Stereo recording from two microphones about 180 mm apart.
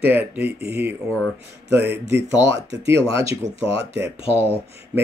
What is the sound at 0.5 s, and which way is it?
Speech, 65° right (ahead or behind).